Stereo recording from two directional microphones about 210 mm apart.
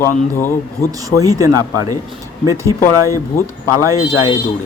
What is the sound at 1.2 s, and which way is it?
Speech, 15° right (ahead or behind).